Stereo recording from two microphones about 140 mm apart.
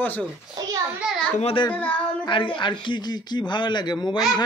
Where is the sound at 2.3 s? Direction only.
35° left (ahead or behind).